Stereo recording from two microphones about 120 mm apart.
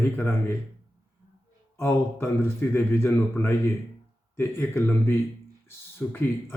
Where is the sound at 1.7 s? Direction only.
20° left (ahead or behind).